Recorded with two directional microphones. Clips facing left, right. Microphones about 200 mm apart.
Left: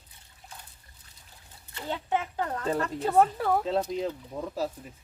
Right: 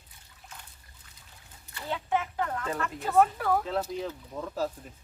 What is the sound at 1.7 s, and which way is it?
Speech, 25° left (ahead or behind).